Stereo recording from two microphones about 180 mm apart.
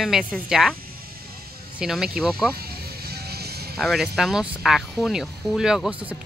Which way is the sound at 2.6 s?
60° right (ahead or behind).